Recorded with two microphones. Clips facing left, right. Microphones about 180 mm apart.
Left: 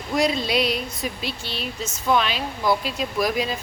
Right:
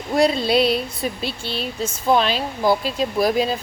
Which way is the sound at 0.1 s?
30° right (ahead or behind).